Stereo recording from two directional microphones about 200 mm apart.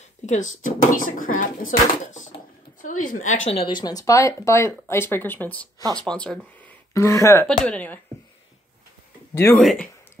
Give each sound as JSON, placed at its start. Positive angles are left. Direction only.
{"t": 0.2, "sound": "a woman's voice", "side_deg": 35}
{"t": 3.5, "sound": "speech", "side_deg": 20}
{"t": 7.4, "sound": "speech", "side_deg": 5}
{"t": 9.3, "sound": "speech", "side_deg": 15}
{"t": 9.6, "sound": "speech", "side_deg": 0}